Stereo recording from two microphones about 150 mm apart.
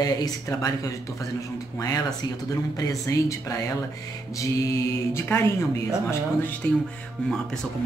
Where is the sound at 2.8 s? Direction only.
20° left (ahead or behind).